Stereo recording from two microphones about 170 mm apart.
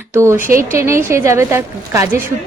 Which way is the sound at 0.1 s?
15° right (ahead or behind).